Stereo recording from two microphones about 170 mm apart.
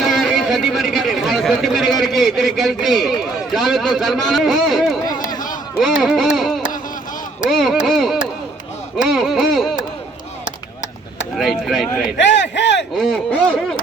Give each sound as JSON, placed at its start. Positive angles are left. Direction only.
{"t": 0.0, "sound": "speech", "side_deg": 0}
{"t": 6.0, "sound": "speech", "side_deg": 0}
{"t": 6.3, "sound": "a sound", "side_deg": 0}
{"t": 7.5, "sound": "speech", "side_deg": 0}
{"t": 11.3, "sound": "speech", "side_deg": 0}
{"t": 12.1, "sound": "a sound", "side_deg": 90}
{"t": 13.3, "sound": "speech", "side_deg": 5}